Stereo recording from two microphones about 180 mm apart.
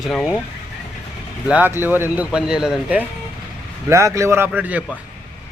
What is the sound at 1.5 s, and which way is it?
Speech, 10° right (ahead or behind).